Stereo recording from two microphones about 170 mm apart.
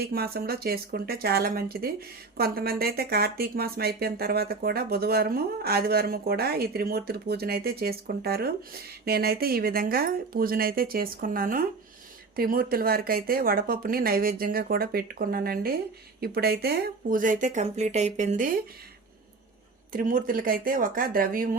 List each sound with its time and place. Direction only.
0.0 s speech: 65° right (ahead or behind)
19.9 s speech: 55° right (ahead or behind)